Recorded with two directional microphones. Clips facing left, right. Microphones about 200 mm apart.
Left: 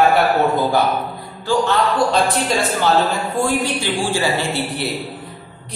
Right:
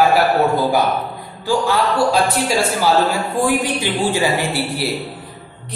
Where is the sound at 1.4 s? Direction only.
10° right (ahead or behind).